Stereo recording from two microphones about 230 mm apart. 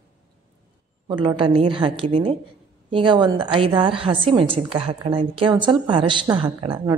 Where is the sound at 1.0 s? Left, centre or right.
Right.